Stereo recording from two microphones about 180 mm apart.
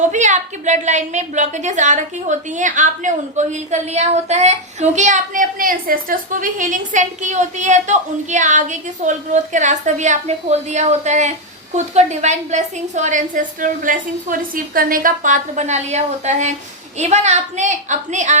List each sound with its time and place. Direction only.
0.1 s a woman's voice: 40° right (ahead or behind)